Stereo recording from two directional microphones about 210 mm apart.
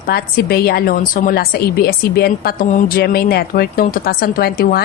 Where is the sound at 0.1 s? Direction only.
50° left (ahead or behind).